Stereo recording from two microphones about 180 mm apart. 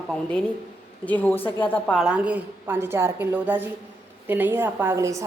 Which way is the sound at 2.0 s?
5° right (ahead or behind).